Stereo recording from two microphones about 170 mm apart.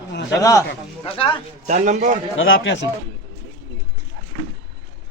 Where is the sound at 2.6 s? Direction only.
90° left.